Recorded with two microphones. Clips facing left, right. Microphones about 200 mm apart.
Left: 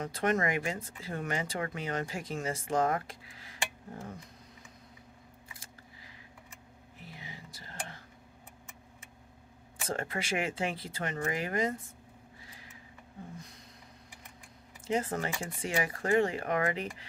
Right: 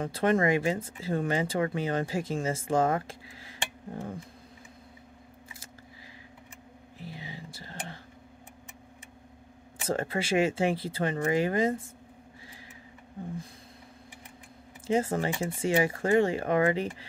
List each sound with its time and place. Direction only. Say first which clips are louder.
0.0 s speech: right 5 dB; 30° right (ahead or behind)
7.0 s music: right 6 dB; 30° right (ahead or behind)
9.8 s speech: right 5 dB; 30° right (ahead or behind)
14.9 s speech: right 5 dB; 25° right (ahead or behind)